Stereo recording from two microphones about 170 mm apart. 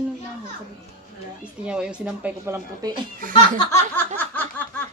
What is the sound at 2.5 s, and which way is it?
Speech, 25° right (ahead or behind).